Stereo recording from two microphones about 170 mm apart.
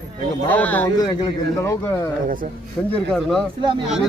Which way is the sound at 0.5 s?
10° left (ahead or behind).